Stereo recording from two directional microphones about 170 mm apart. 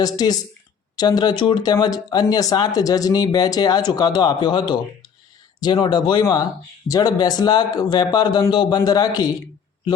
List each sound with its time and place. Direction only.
0.0 s speech: 20° left (ahead or behind)